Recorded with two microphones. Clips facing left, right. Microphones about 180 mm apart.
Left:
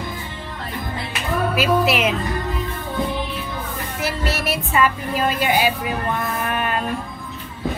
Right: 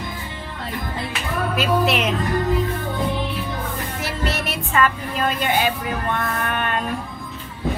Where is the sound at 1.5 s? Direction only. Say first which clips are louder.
Even; 5° left (ahead or behind).